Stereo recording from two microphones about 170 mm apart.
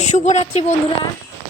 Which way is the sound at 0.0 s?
40° left (ahead or behind).